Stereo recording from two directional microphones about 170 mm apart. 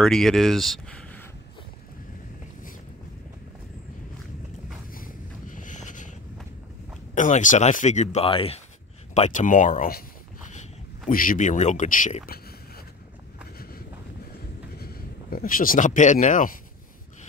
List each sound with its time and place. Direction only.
0.0 s speech: 5° left (ahead or behind)
4.9 s a sound: 50° left (ahead or behind)
7.2 s speech: 45° left (ahead or behind)
11.1 s speech: 55° left (ahead or behind)
14.8 s speech: 60° left (ahead or behind)